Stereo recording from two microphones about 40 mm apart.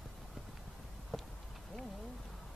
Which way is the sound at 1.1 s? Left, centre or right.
Centre.